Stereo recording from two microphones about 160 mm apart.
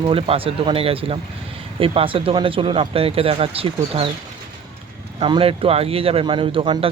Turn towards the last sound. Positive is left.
turn(degrees=-35)  # may be behind; listen again after turning